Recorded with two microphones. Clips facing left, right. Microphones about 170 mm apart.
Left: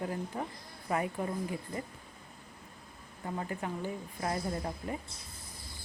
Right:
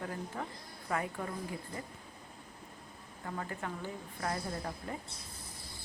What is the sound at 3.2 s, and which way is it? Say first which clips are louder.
A woman's voice: left 3 dB; 20° left (ahead or behind).